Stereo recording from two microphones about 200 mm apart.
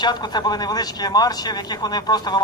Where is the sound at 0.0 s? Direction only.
20° left (ahead or behind).